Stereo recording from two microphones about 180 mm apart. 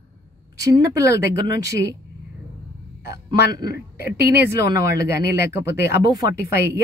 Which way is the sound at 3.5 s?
55° left (ahead or behind).